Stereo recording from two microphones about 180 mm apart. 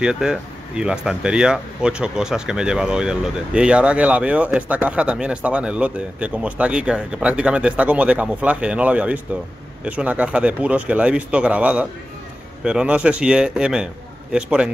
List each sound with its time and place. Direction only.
0.0 s speech: 5° right (ahead or behind)